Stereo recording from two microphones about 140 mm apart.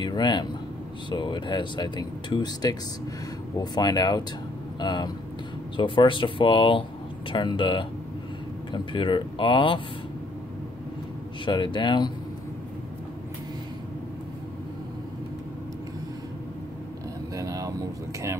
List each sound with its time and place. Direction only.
0.0 s speech: 30° left (ahead or behind)
11.4 s speech: 35° left (ahead or behind)
17.4 s a sound: 25° right (ahead or behind)